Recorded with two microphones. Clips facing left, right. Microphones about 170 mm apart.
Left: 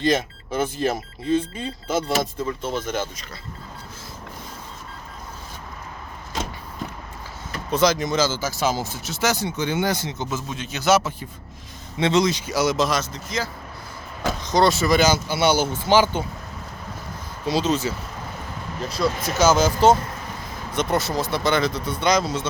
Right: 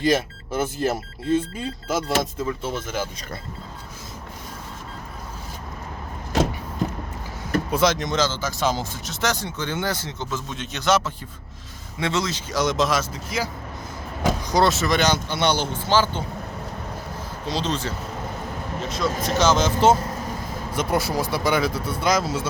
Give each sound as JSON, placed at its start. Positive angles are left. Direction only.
{"t": 0.0, "sound": "speech", "side_deg": -5}
{"t": 7.7, "sound": "speech", "side_deg": 0}
{"t": 11.9, "sound": "speech", "side_deg": 20}
{"t": 17.4, "sound": "speech", "side_deg": 10}
{"t": 19.4, "sound": "speech", "side_deg": 5}